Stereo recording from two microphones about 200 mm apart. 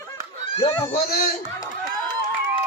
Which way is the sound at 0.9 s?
50° left (ahead or behind).